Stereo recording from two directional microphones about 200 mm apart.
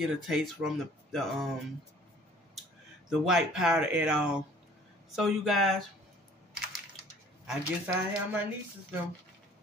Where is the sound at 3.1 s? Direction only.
5° right (ahead or behind).